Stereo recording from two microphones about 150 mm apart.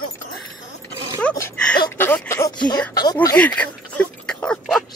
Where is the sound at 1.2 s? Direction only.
5° left (ahead or behind).